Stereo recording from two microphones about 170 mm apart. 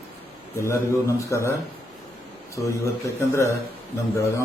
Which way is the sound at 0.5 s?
15° left (ahead or behind).